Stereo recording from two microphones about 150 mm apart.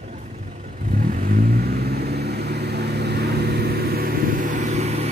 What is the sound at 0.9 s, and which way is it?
Vehicle, 70° right (ahead or behind).